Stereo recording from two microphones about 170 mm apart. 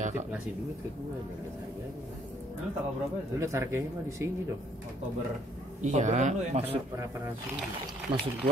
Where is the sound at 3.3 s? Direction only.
15° right (ahead or behind).